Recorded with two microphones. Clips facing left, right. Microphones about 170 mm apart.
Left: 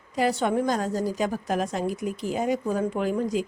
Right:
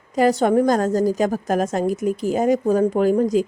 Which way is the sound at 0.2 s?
40° right (ahead or behind).